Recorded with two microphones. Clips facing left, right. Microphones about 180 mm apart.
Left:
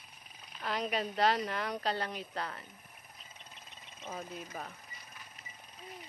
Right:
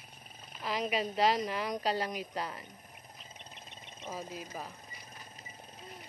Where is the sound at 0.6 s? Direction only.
10° right (ahead or behind).